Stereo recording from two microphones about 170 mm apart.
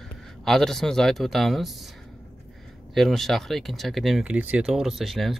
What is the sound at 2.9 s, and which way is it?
Speech, centre (ahead or behind).